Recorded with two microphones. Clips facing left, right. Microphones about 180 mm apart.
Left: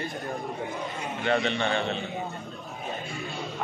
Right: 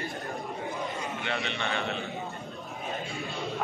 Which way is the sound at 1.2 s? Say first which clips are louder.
Left 10 dB; 40° left (ahead or behind).